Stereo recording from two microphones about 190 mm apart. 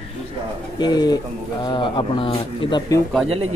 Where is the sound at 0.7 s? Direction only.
20° left (ahead or behind).